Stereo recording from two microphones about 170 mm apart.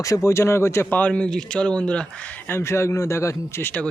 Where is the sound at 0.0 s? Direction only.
15° left (ahead or behind).